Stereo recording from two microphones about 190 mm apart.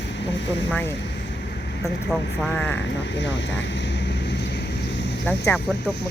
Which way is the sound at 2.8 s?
70° left (ahead or behind).